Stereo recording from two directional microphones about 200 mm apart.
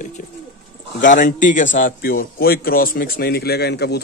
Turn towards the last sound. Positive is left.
turn(degrees=55)  # may be behind; listen again after turning